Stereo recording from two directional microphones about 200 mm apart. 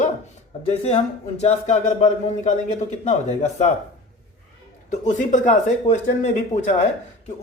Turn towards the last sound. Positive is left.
turn(degrees=40)  # may be behind; listen again after turning